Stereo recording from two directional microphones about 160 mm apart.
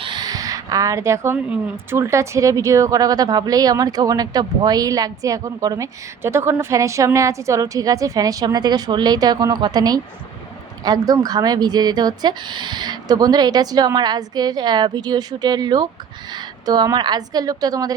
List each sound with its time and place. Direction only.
0.0 s speech: 25° right (ahead or behind)